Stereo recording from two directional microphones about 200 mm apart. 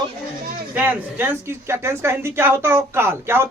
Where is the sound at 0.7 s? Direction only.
10° right (ahead or behind).